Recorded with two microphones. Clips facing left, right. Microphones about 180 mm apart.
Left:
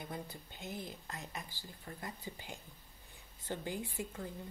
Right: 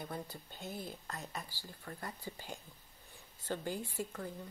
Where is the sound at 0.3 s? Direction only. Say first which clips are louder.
Even; 15° left (ahead or behind).